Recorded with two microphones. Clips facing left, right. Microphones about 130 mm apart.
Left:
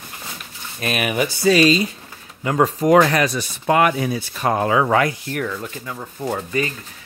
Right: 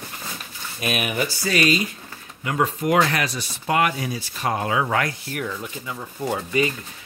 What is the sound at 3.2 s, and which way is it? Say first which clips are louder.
Speech: left 6 dB; 50° left (ahead or behind).